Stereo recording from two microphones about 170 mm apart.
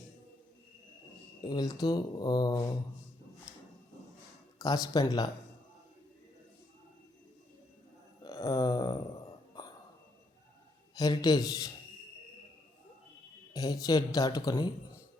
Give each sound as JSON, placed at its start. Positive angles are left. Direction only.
{"t": 1.4, "sound": "speech", "side_deg": 25}
{"t": 4.6, "sound": "speech", "side_deg": 20}
{"t": 8.2, "sound": "a sound", "side_deg": 20}
{"t": 10.9, "sound": "speech", "side_deg": 20}
{"t": 13.5, "sound": "speech", "side_deg": 20}